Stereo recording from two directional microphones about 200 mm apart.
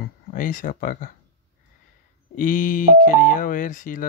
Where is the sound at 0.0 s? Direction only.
45° left (ahead or behind).